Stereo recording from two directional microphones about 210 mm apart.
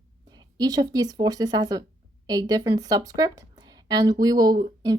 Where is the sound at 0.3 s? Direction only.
20° right (ahead or behind).